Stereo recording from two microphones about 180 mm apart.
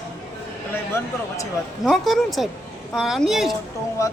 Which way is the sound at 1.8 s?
Centre (ahead or behind).